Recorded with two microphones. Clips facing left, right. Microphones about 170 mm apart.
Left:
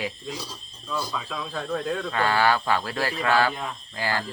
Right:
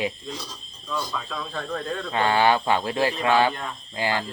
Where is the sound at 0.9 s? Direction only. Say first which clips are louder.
Even; 5° left (ahead or behind).